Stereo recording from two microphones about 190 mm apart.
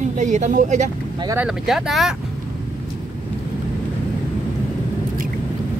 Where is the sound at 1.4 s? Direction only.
Centre (ahead or behind).